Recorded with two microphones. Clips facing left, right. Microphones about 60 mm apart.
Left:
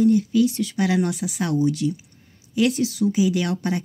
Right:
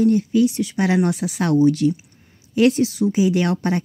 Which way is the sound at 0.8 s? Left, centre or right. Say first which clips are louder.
Right 3 dB; right.